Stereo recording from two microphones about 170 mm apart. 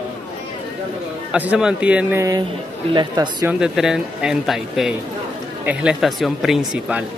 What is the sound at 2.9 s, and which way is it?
Speech, 25° right (ahead or behind).